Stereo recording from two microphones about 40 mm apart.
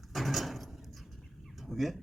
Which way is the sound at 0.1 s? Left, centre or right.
Centre.